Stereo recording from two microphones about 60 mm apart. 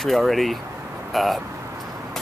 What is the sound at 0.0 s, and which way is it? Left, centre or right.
Speech, centre.